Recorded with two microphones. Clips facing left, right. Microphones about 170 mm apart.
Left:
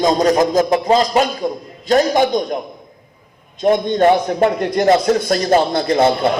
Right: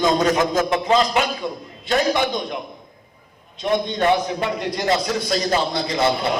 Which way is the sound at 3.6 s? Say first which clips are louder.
Left 6 dB; 45° left (ahead or behind).